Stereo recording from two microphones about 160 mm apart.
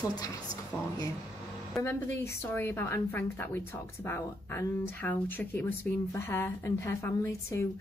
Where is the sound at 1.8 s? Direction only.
15° left (ahead or behind).